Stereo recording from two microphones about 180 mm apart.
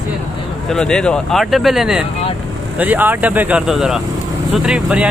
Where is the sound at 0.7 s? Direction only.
5° left (ahead or behind).